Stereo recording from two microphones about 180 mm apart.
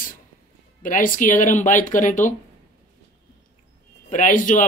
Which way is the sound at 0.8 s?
50° left (ahead or behind).